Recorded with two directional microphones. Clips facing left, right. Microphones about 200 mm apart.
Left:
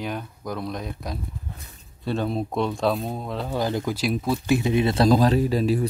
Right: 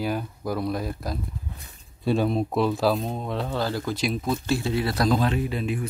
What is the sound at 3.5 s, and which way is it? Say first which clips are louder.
Speech: left 4 dB; 15° left (ahead or behind).